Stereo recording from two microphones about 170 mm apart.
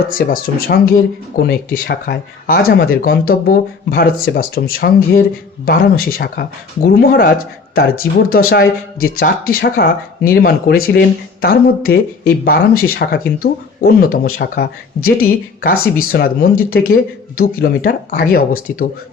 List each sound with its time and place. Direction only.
0.1 s speech: 60° left (ahead or behind)
8.3 s speech: 65° left (ahead or behind)